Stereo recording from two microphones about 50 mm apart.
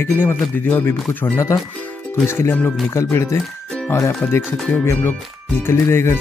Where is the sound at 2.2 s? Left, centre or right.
Left.